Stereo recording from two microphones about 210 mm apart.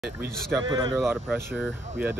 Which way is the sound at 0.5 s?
15° right (ahead or behind).